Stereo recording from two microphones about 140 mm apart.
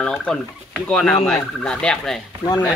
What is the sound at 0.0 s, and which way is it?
Speech, 5° left (ahead or behind).